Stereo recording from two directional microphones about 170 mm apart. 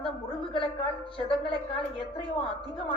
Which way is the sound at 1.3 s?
30° left (ahead or behind).